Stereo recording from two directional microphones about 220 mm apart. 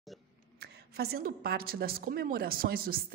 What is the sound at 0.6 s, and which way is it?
A woman's voice, 45° right (ahead or behind).